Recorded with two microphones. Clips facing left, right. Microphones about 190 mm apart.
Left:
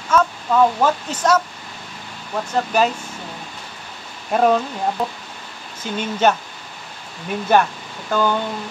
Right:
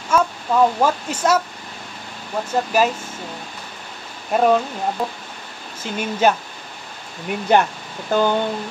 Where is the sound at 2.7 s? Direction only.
5° right (ahead or behind).